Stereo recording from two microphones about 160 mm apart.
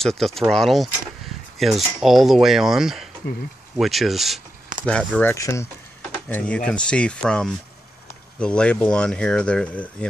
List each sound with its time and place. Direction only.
0.0 s speech: centre (ahead or behind)
5.3 s speech: 20° left (ahead or behind)